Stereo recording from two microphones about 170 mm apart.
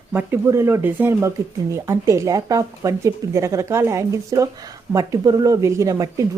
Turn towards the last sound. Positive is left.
turn(degrees=-20)  # may be behind; listen again after turning